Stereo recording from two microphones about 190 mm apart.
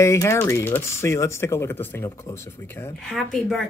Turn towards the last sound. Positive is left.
turn(degrees=0)  # may be behind; listen again after turning